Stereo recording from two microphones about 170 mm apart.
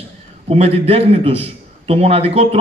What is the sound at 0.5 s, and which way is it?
A man's voice, 35° right (ahead or behind).